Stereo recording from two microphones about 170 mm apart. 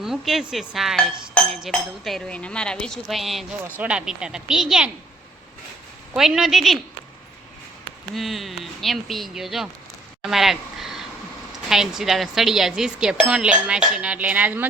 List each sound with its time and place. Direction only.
0.0 s speech: centre (ahead or behind)
6.1 s speech: centre (ahead or behind)
8.1 s speech: centre (ahead or behind)